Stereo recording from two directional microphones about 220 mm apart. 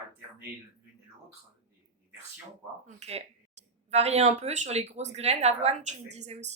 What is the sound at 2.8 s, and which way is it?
Speech, 30° right (ahead or behind).